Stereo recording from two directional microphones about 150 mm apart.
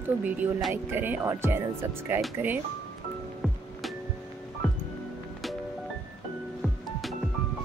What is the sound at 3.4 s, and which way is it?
Music, centre (ahead or behind).